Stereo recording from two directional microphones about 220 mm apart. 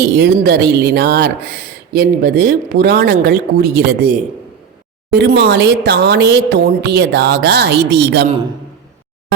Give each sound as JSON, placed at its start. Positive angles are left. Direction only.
{"t": 0.0, "sound": "speech", "side_deg": -45}
{"t": 5.1, "sound": "speech", "side_deg": -45}